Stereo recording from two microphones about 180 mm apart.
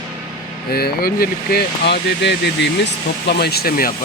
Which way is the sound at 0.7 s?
55° left (ahead or behind).